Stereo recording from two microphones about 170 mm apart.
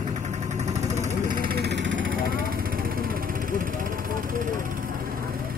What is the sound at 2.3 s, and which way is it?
Vehicle, 60° right (ahead or behind).